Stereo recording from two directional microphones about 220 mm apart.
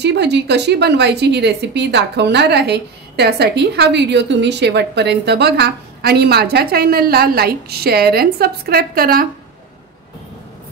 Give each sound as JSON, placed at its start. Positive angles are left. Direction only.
{"t": 0.0, "sound": "a woman's voice", "side_deg": -50}